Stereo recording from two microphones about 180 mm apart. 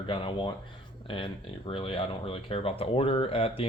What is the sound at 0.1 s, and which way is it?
Speech, 30° left (ahead or behind).